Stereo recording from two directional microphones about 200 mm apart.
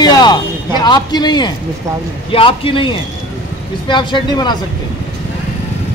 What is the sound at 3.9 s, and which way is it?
Speech, 25° left (ahead or behind).